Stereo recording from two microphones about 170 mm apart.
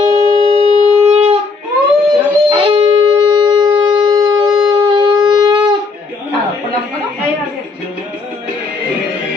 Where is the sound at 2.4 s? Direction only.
30° right (ahead or behind).